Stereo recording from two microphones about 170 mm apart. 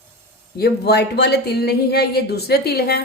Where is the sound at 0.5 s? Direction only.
70° left (ahead or behind).